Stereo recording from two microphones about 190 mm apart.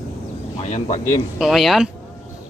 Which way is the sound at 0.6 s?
40° left (ahead or behind).